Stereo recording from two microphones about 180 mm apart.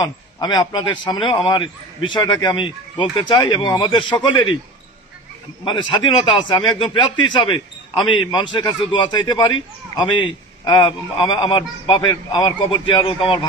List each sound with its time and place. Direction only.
0.0 s a man's voice: 20° left (ahead or behind)
5.6 s a man's voice: 25° left (ahead or behind)